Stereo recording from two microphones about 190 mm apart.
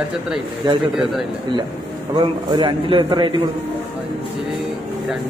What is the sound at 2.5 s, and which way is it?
Speech, 25° right (ahead or behind).